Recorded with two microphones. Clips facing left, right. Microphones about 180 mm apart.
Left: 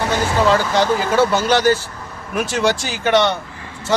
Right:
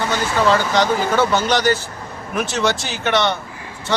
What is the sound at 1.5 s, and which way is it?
Speech, 35° left (ahead or behind).